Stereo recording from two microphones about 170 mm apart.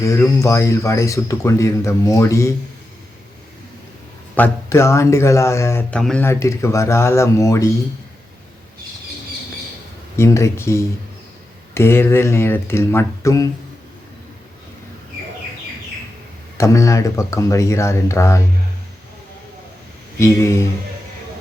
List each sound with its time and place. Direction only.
0.0 s speech: 15° left (ahead or behind)
4.4 s speech: 15° left (ahead or behind)
6.0 s speech: 5° left (ahead or behind)
6.2 s speech: 15° left (ahead or behind)
10.2 s speech: 15° left (ahead or behind)
16.6 s speech: 20° left (ahead or behind)
20.1 s speech: 15° left (ahead or behind)